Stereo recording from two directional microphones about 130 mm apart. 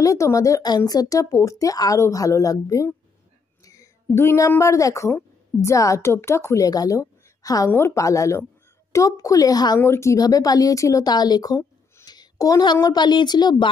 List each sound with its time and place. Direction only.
0.0 s speech: 25° left (ahead or behind)